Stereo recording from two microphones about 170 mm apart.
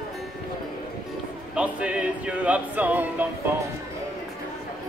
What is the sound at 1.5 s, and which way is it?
Music, 5° right (ahead or behind).